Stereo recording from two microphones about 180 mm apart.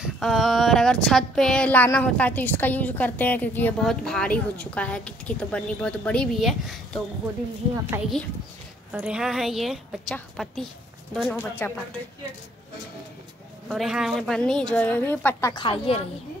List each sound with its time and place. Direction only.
0.0 s speech: centre (ahead or behind)
8.9 s speech: 5° right (ahead or behind)
13.7 s speech: centre (ahead or behind)
15.5 s speech: 30° left (ahead or behind)